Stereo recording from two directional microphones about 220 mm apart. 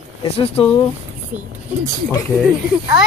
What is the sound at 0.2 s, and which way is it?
Speech, 25° left (ahead or behind).